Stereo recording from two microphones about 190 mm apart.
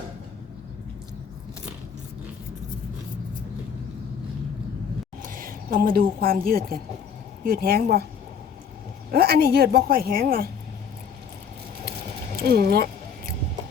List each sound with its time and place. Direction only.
5.2 s a woman's voice: 45° right (ahead or behind)
9.1 s a woman's voice: 55° right (ahead or behind)
12.4 s speech: 55° right (ahead or behind)